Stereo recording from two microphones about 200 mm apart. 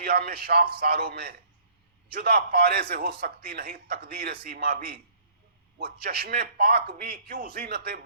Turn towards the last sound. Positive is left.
turn(degrees=-50)  # may be behind; listen again after turning